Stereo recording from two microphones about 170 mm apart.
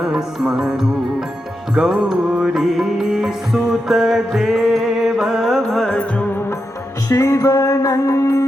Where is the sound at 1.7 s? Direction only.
5° right (ahead or behind).